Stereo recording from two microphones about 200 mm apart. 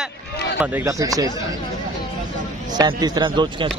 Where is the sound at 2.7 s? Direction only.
20° right (ahead or behind).